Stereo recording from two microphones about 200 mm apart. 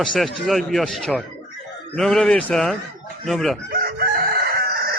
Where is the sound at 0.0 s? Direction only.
Centre (ahead or behind).